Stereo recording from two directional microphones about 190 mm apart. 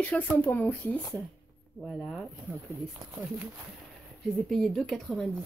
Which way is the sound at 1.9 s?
5° right (ahead or behind).